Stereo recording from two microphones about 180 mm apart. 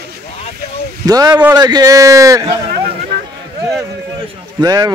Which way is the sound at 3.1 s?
65° right (ahead or behind).